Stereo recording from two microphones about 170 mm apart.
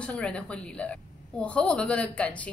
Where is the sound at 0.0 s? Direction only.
5° left (ahead or behind).